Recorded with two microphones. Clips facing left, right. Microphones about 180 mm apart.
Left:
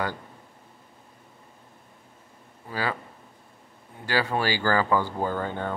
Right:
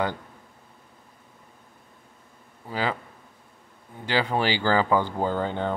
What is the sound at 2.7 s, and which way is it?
Speech, 20° right (ahead or behind).